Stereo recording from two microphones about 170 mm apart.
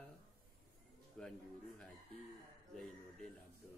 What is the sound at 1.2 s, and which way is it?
Speech, 5° left (ahead or behind).